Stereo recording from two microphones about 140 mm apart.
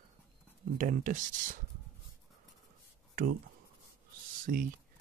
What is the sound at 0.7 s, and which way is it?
Speech, 70° right (ahead or behind).